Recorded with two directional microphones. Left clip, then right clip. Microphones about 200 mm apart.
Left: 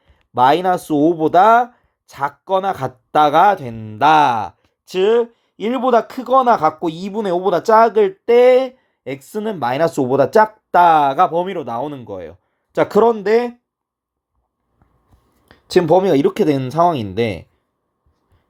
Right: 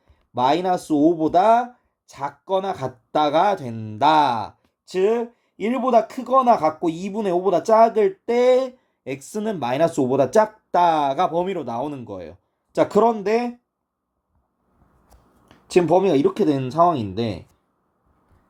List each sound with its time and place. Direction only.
0.3 s speech: 25° left (ahead or behind)
15.8 s speech: 25° left (ahead or behind)
16.6 s speech: 50° left (ahead or behind)